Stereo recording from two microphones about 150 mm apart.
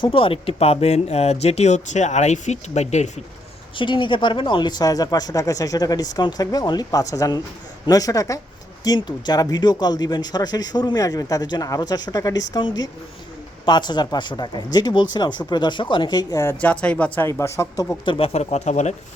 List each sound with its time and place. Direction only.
0.0 s speech: 35° left (ahead or behind)
3.8 s speech: 35° left (ahead or behind)
16.6 s speech: 10° left (ahead or behind)
17.2 s speech: 20° left (ahead or behind)
18.0 s speech: 35° left (ahead or behind)